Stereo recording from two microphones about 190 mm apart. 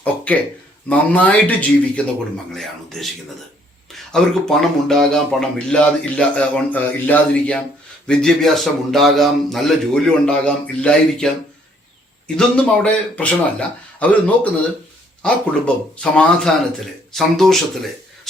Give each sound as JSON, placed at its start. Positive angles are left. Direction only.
{"t": 0.9, "sound": "speech", "side_deg": 10}
{"t": 12.4, "sound": "speech", "side_deg": 5}